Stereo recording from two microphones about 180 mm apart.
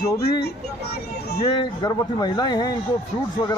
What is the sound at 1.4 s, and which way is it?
Speech, 25° left (ahead or behind).